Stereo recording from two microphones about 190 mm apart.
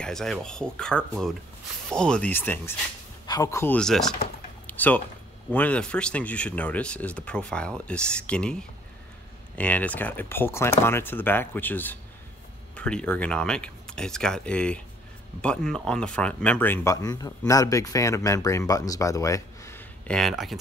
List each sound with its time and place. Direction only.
0.0 s speech: centre (ahead or behind)
4.6 s typing: 10° left (ahead or behind)
5.5 s speech: 10° left (ahead or behind)